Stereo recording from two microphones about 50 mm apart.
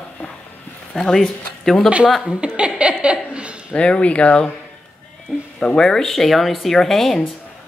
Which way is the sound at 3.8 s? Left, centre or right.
Left.